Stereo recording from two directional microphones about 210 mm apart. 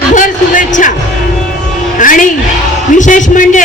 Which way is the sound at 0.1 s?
40° left (ahead or behind).